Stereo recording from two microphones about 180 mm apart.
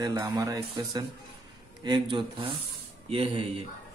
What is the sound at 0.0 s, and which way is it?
A man's voice, 20° right (ahead or behind).